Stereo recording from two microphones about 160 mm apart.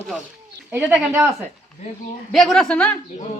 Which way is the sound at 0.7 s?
10° right (ahead or behind).